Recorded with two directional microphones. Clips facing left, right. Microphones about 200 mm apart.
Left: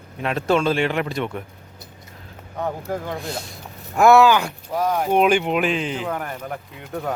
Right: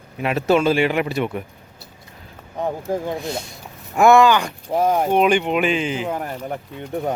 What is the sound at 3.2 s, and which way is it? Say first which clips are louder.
Speech: right 3 dB; centre (ahead or behind).